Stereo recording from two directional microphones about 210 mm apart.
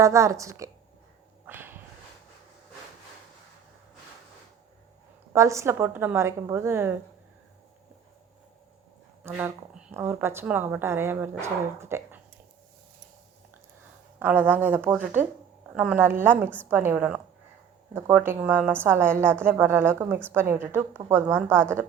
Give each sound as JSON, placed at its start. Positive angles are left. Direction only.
{"t": 0.0, "sound": "a woman's voice", "side_deg": -15}
{"t": 1.5, "sound": "a sound", "side_deg": -10}
{"t": 5.3, "sound": "a woman's voice", "side_deg": -15}
{"t": 9.2, "sound": "a woman's voice", "side_deg": -10}
{"t": 14.2, "sound": "a woman's voice", "side_deg": -10}